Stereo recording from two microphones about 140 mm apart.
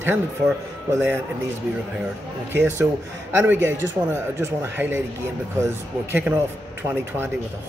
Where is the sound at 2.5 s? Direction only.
15° right (ahead or behind).